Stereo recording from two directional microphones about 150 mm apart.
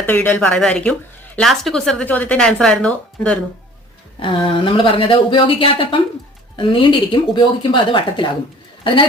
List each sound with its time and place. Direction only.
0.0 s speech: 10° left (ahead or behind)
4.4 s speech: 35° left (ahead or behind)